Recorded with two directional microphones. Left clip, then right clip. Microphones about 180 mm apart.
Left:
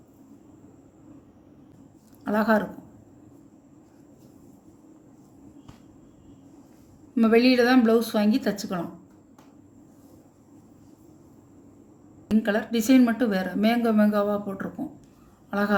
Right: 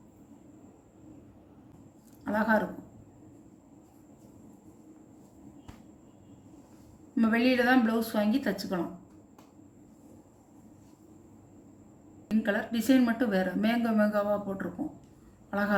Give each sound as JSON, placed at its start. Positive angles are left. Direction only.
{"t": 2.2, "sound": "a woman's voice", "side_deg": 50}
{"t": 7.2, "sound": "a woman's voice", "side_deg": 50}
{"t": 12.4, "sound": "a woman's voice", "side_deg": 50}
{"t": 15.4, "sound": "a sound", "side_deg": 50}